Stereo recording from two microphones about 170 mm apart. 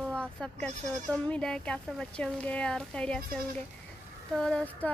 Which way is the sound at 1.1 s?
5° left (ahead or behind).